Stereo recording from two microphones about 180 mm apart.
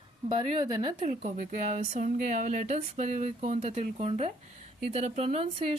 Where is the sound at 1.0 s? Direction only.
45° right (ahead or behind).